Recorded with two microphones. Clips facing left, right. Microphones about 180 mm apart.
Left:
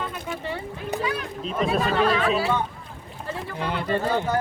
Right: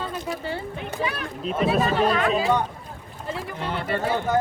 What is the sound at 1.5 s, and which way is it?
Speech, 5° right (ahead or behind).